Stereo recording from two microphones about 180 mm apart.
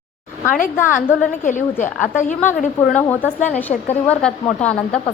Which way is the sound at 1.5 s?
45° left (ahead or behind).